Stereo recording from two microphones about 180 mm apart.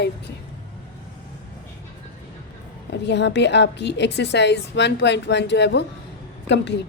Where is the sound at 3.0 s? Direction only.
70° left (ahead or behind).